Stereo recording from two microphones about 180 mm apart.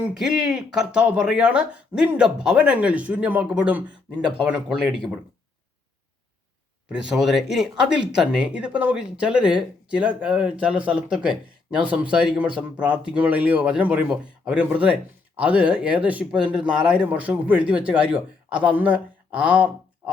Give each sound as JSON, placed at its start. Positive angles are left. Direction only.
{"t": 0.0, "sound": "speech", "side_deg": 0}
{"t": 6.9, "sound": "speech", "side_deg": -5}